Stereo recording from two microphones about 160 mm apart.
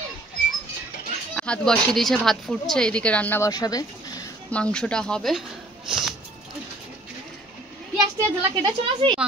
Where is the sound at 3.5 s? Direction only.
25° left (ahead or behind).